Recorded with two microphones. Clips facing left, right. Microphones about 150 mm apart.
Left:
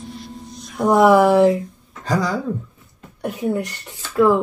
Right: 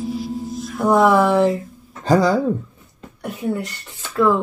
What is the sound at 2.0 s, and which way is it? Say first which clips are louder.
Speech: right 6 dB; 30° right (ahead or behind).